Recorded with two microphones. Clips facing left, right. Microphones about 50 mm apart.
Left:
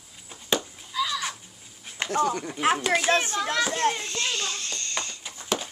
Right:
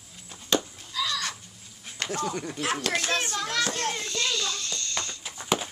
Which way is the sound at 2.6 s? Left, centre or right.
Left.